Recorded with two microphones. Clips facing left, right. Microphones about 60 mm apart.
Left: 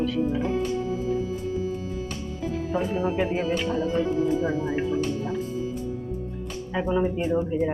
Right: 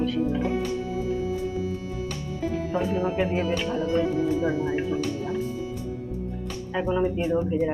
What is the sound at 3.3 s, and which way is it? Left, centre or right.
Speech, centre.